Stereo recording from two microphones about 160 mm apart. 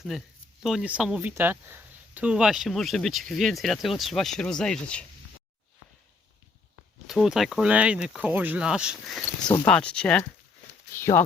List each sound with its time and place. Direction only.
0.1 s speech: centre (ahead or behind)
7.1 s speech: centre (ahead or behind)
10.9 s speech: 15° left (ahead or behind)